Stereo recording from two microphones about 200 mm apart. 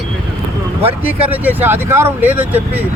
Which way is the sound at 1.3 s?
10° right (ahead or behind).